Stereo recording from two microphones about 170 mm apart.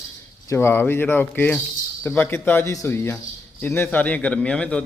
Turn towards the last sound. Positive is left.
turn(degrees=5)  # may be behind; listen again after turning